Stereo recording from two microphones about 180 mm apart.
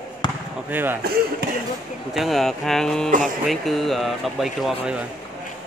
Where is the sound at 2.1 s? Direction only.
Centre (ahead or behind).